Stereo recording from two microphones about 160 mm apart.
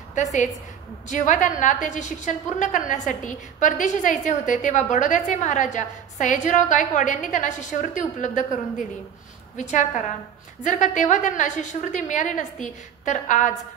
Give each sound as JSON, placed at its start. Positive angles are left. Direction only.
{"t": 0.1, "sound": "a woman's voice", "side_deg": 50}